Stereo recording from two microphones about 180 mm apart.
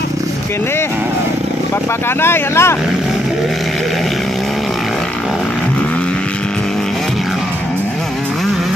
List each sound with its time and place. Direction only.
2.2 s speech: 15° left (ahead or behind)